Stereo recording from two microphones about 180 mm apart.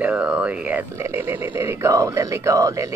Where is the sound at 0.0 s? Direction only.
5° right (ahead or behind).